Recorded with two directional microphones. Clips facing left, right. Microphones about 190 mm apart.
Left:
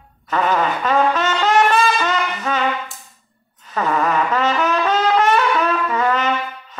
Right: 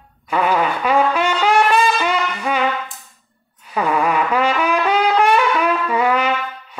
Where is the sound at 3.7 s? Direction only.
10° right (ahead or behind).